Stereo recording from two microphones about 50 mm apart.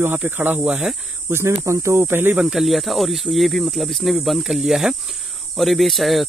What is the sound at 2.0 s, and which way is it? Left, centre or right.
Speech, right.